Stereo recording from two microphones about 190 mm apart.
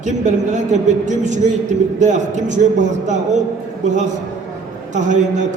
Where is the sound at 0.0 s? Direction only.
40° right (ahead or behind).